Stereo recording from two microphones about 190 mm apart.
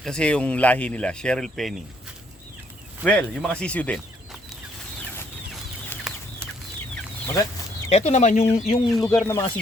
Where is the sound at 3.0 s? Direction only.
5° left (ahead or behind).